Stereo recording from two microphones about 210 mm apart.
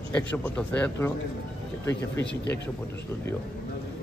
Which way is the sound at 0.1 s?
5° left (ahead or behind).